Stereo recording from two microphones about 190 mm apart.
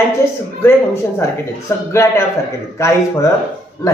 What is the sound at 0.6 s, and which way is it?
A man's voice, 15° left (ahead or behind).